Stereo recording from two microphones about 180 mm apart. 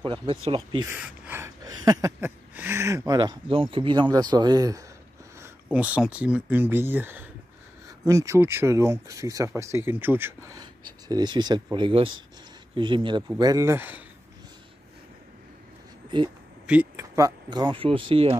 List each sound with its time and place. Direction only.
0.0 s speech: 30° right (ahead or behind)
0.8 s speech: 10° right (ahead or behind)
5.4 s speech: 10° right (ahead or behind)
16.6 s speech: 10° right (ahead or behind); by 18.3 s 30° right (ahead or behind)